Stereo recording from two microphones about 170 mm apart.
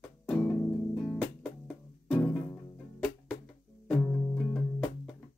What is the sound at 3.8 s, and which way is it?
Music, 5° left (ahead or behind).